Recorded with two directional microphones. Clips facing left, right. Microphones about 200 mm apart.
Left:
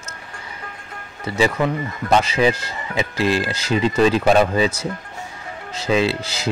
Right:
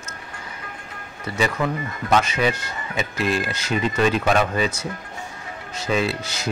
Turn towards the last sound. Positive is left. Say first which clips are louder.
# left 4 dB
turn(degrees=30)  # may be behind; listen again after turning